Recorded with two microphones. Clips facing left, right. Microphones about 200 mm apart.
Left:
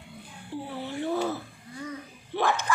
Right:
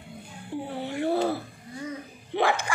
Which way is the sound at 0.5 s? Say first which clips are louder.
Right 3 dB; 15° right (ahead or behind).